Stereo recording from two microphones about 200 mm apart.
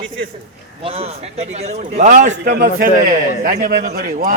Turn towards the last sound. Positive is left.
turn(degrees=-45)  # may be behind; listen again after turning